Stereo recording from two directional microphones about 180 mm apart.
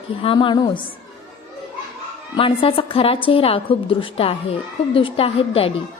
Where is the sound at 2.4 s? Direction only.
30° left (ahead or behind).